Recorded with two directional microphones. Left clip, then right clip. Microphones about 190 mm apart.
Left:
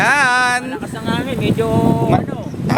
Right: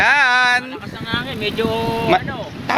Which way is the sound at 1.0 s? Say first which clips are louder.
Left 2 dB; 50° right (ahead or behind).